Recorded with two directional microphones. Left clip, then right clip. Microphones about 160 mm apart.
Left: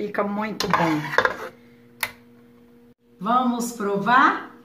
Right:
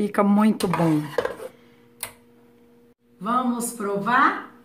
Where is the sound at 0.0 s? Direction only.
90° right.